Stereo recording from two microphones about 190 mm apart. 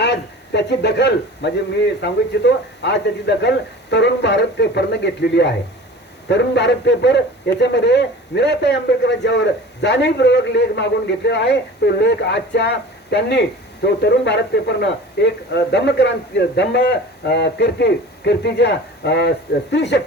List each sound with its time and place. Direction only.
0.0 s a man's voice: 65° left (ahead or behind)